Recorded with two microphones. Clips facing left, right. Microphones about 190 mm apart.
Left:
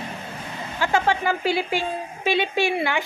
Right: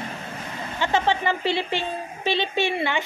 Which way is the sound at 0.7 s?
5° left (ahead or behind).